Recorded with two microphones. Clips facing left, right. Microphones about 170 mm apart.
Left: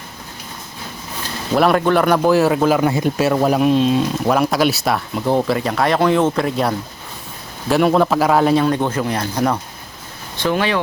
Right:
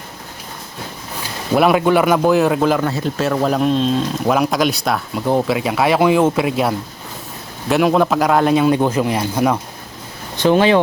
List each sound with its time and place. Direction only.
1.5 s speech: 5° right (ahead or behind)
10.4 s speech: 20° right (ahead or behind)